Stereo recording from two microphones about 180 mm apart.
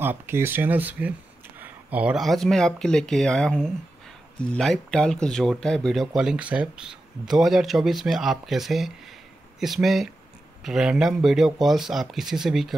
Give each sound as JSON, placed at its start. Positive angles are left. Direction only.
{"t": 0.0, "sound": "speech", "side_deg": -10}